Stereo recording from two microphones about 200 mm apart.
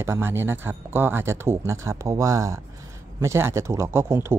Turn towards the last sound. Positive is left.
turn(degrees=-10)  # may be behind; listen again after turning